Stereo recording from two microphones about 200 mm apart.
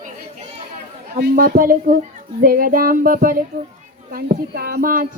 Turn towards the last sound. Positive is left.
turn(degrees=-45)  # may be behind; listen again after turning